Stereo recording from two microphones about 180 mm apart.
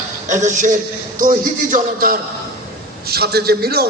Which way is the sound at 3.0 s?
60° right (ahead or behind).